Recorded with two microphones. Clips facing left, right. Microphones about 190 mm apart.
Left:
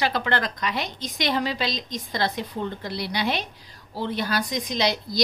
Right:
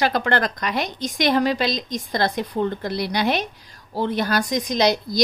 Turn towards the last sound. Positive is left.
turn(degrees=-45)  # may be behind; listen again after turning